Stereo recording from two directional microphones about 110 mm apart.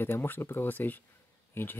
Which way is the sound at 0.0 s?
20° left (ahead or behind).